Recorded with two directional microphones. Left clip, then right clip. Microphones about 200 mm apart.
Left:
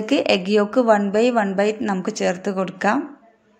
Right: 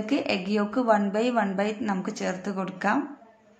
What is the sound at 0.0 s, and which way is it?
A woman's voice, 35° left (ahead or behind).